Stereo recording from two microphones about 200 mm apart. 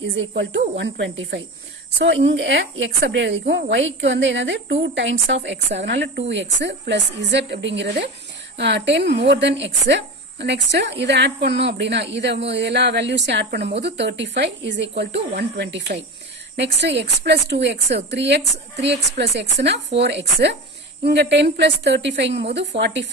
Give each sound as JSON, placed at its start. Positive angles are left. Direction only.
{"t": 0.4, "sound": "speech", "side_deg": -60}